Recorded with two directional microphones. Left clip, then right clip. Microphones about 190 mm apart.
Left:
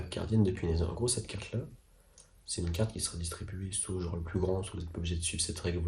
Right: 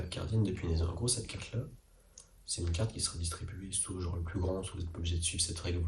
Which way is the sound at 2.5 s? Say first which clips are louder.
Left 3 dB; 55° left (ahead or behind).